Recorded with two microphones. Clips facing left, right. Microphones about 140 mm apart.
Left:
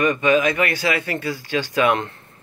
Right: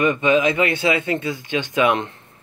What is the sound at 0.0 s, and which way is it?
Speech, 25° right (ahead or behind).